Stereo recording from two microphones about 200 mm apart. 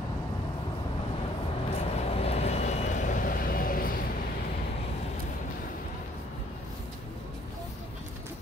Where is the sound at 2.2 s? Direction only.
30° left (ahead or behind).